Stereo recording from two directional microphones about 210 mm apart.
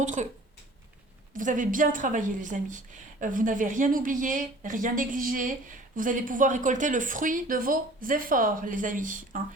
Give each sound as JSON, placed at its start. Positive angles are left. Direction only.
{"t": 0.0, "sound": "a woman's voice", "side_deg": -35}
{"t": 1.3, "sound": "a woman's voice", "side_deg": -40}